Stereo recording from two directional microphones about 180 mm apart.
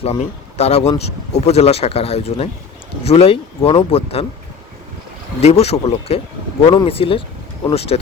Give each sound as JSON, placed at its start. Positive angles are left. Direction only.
{"t": 0.0, "sound": "speech", "side_deg": 35}
{"t": 5.4, "sound": "speech", "side_deg": 35}